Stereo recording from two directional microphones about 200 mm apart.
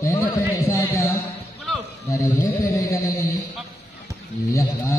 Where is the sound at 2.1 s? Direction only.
15° left (ahead or behind).